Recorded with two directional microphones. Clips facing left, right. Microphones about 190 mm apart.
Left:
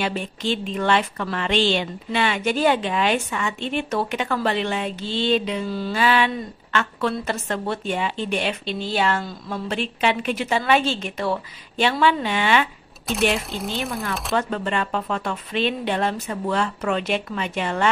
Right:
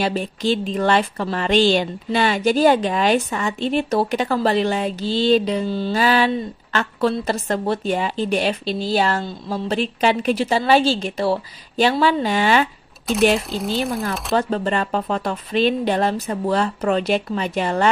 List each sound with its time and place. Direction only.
0.0 s a woman's voice: 35° right (ahead or behind)
13.0 s speech: centre (ahead or behind)
14.3 s a woman's voice: 35° right (ahead or behind)